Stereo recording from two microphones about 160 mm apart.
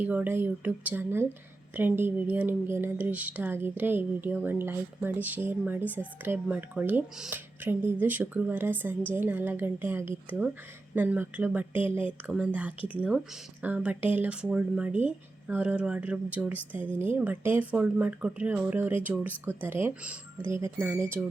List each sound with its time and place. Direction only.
0.0 s speech: 10° right (ahead or behind)
16.7 s speech: 35° left (ahead or behind)
17.0 s speech: 15° right (ahead or behind)